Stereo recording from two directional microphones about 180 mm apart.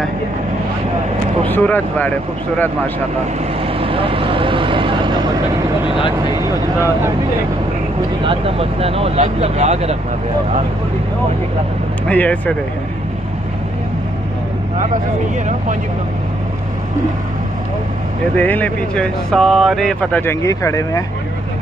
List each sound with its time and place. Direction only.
1.5 s speech: 10° left (ahead or behind)
3.8 s vehicle: 30° right (ahead or behind)
5.9 s speech: 25° left (ahead or behind)
8.2 s speech: 30° right (ahead or behind)
12.1 s speech: 10° left (ahead or behind)
18.3 s speech: 10° left (ahead or behind)